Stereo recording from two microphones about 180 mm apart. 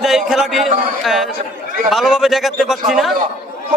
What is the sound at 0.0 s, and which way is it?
A man's voice, centre (ahead or behind).